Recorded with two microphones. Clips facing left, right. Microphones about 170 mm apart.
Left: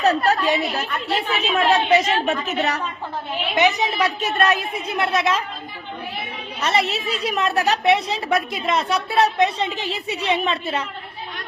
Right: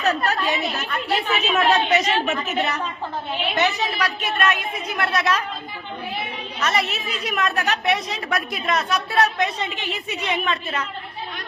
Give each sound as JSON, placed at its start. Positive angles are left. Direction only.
{"t": 0.0, "sound": "a woman's voice", "side_deg": 35}
{"t": 3.5, "sound": "a woman's voice", "side_deg": 20}
{"t": 4.2, "sound": "a woman's voice", "side_deg": 40}
{"t": 6.6, "sound": "a woman's voice", "side_deg": 30}